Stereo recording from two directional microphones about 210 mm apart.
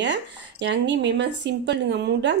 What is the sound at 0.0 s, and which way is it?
A woman's voice, 55° right (ahead or behind).